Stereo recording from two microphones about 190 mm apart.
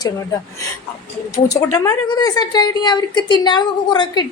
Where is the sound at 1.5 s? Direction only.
20° left (ahead or behind).